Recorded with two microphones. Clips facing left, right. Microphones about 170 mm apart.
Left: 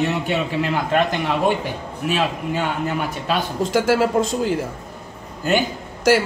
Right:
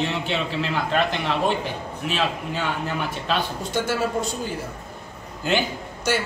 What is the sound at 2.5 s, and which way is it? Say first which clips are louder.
Speech: left 4 dB; 50° left (ahead or behind).